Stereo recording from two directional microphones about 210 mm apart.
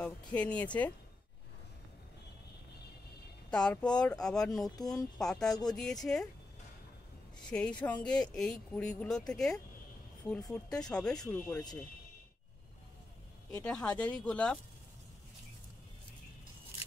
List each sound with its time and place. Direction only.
0.0 s speech: 5° left (ahead or behind)
3.4 s speech: 5° left (ahead or behind)
7.3 s speech: 5° left (ahead or behind)
11.1 s speech: 15° left (ahead or behind)
13.7 s speech: 5° left (ahead or behind)